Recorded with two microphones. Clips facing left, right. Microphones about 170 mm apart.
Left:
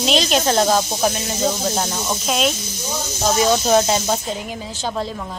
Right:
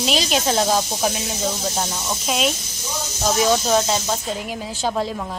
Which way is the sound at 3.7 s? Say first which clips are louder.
Left 3 dB; 15° left (ahead or behind).